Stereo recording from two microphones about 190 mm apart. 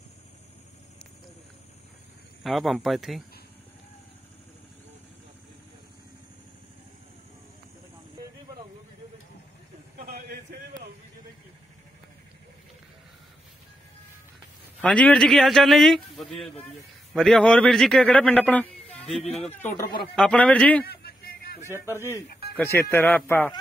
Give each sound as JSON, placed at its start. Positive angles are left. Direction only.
{"t": 2.4, "sound": "a man's voice", "side_deg": 0}
{"t": 9.9, "sound": "a sound", "side_deg": -50}
{"t": 14.8, "sound": "a man's voice", "side_deg": 5}
{"t": 19.8, "sound": "speech", "side_deg": 25}
{"t": 20.2, "sound": "speech", "side_deg": 5}
{"t": 20.8, "sound": "a sound", "side_deg": 55}
{"t": 21.6, "sound": "speech", "side_deg": -15}
{"t": 22.6, "sound": "speech", "side_deg": 10}